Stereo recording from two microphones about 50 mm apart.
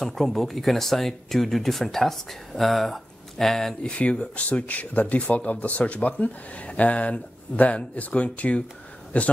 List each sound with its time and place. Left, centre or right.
0.0 s speech: centre
3.9 s speech: left